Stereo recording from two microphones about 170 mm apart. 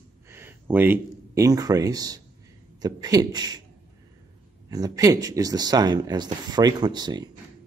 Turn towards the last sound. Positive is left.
turn(degrees=-25)  # may be behind; listen again after turning